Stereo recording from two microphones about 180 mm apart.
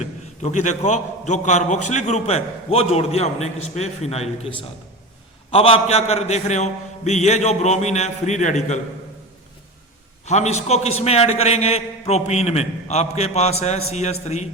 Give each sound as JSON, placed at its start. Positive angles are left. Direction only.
{"t": 0.0, "sound": "a man's voice", "side_deg": 40}
{"t": 10.2, "sound": "a man's voice", "side_deg": 40}